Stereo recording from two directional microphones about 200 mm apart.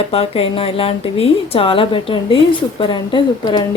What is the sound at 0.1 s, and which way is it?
A woman's voice, 30° left (ahead or behind).